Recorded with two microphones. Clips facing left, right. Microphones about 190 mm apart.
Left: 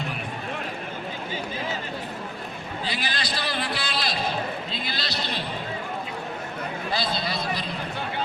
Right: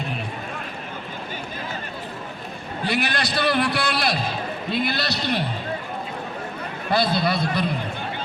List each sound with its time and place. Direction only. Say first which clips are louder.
2.9 s a man's voice: right 9 dB; 65° right (ahead or behind)
6.9 s a man's voice: right 9 dB; 60° right (ahead or behind)